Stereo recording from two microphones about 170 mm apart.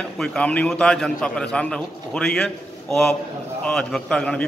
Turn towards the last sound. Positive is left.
turn(degrees=5)  # may be behind; listen again after turning